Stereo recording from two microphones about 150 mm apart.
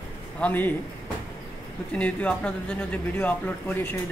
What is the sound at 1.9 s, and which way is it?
Speech, 10° left (ahead or behind).